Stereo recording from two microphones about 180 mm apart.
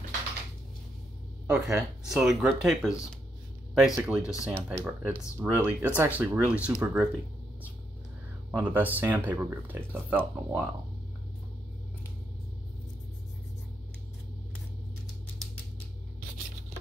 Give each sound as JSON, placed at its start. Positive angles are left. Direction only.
{"t": 1.5, "sound": "speech", "side_deg": -5}
{"t": 4.2, "sound": "speech", "side_deg": 15}
{"t": 4.5, "sound": "speech", "side_deg": -10}
{"t": 8.5, "sound": "speech", "side_deg": -10}